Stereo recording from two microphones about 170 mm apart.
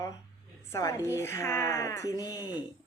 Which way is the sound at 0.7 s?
20° left (ahead or behind).